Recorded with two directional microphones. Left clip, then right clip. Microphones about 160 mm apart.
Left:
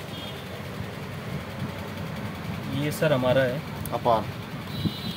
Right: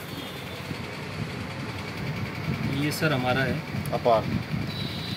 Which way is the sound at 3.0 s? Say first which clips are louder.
Left 5 dB; 50° left (ahead or behind).